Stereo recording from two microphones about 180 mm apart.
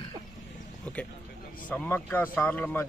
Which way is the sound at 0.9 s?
10° left (ahead or behind).